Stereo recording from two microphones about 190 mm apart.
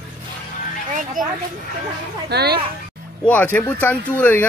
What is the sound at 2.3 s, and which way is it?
Speech, 60° right (ahead or behind).